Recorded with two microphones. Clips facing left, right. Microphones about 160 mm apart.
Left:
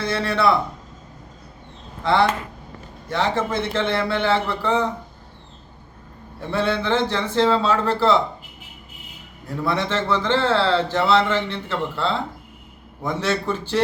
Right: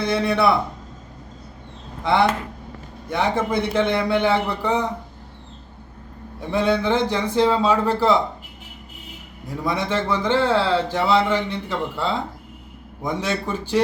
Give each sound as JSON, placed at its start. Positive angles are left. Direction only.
{"t": 0.0, "sound": "a man's voice", "side_deg": -15}
{"t": 3.1, "sound": "a man's voice", "side_deg": -10}
{"t": 6.5, "sound": "a man's voice", "side_deg": -15}
{"t": 9.6, "sound": "a man's voice", "side_deg": -10}